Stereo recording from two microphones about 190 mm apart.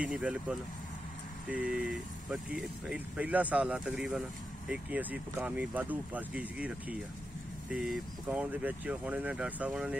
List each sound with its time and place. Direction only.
0.0 s speech: 5° right (ahead or behind)